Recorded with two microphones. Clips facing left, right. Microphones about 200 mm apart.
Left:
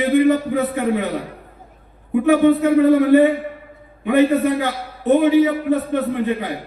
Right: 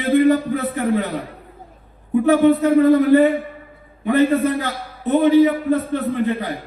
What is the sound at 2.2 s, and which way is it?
A man's voice, 15° left (ahead or behind).